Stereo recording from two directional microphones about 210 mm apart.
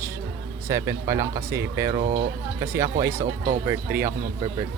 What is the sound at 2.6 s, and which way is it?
Speech, 10° right (ahead or behind).